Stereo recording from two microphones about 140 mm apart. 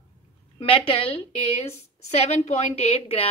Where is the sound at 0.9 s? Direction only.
40° left (ahead or behind).